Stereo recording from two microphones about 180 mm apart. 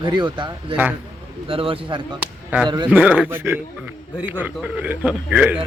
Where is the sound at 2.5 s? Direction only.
10° right (ahead or behind).